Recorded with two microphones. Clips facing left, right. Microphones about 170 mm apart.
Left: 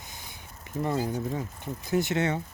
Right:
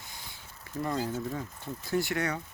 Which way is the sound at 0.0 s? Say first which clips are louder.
Left 2 dB; 20° left (ahead or behind).